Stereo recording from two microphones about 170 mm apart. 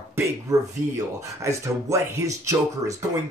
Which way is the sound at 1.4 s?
20° right (ahead or behind).